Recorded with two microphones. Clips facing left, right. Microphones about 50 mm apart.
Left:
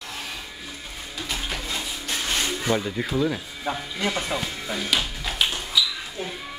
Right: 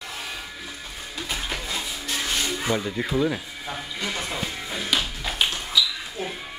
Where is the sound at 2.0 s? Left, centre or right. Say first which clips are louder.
Left 1 dB; left.